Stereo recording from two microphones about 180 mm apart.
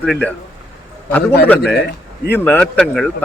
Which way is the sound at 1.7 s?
65° left (ahead or behind).